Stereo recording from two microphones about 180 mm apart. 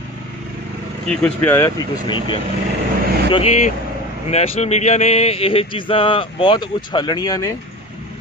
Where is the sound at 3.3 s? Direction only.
35° left (ahead or behind); by 7.5 s 20° left (ahead or behind).